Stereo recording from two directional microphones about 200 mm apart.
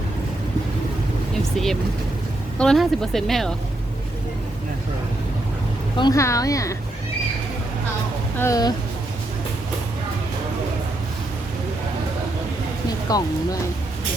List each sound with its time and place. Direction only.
1.5 s speech: centre (ahead or behind)
6.0 s a woman's voice: 15° left (ahead or behind)
8.4 s a woman's voice: 15° left (ahead or behind)
13.1 s a woman's voice: 20° left (ahead or behind)